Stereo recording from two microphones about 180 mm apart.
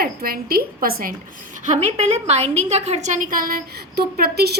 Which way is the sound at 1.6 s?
40° right (ahead or behind).